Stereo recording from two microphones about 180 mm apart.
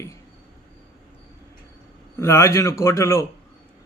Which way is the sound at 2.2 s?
15° left (ahead or behind).